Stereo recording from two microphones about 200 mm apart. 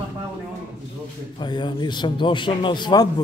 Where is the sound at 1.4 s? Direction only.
20° left (ahead or behind).